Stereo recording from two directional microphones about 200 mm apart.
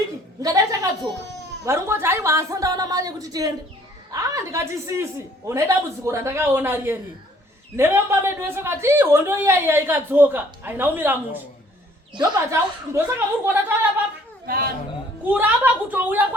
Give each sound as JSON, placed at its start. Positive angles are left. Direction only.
{"t": 0.4, "sound": "speech", "side_deg": -15}
{"t": 15.2, "sound": "speech", "side_deg": -10}